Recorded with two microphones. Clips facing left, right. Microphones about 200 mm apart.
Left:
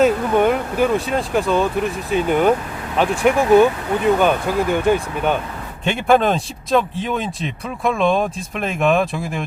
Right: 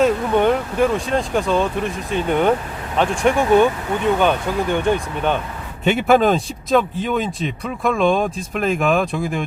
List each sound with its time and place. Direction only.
0.0 s speech: 5° left (ahead or behind)
5.8 s speech: 5° right (ahead or behind)